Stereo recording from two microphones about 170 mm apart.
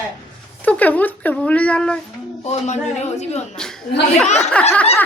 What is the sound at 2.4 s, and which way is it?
A man's voice, 40° left (ahead or behind).